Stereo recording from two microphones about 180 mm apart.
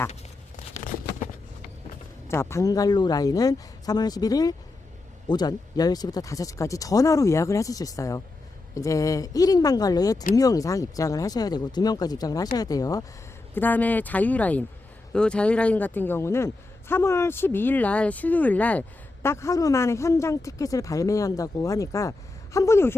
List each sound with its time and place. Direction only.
2.2 s speech: 15° left (ahead or behind)